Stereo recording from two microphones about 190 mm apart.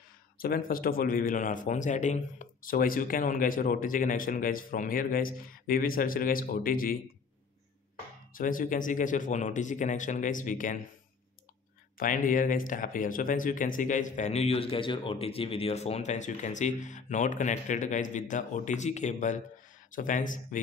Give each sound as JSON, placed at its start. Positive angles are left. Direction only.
{"t": 0.4, "sound": "speech", "side_deg": 50}
{"t": 8.3, "sound": "speech", "side_deg": 45}
{"t": 12.0, "sound": "speech", "side_deg": 45}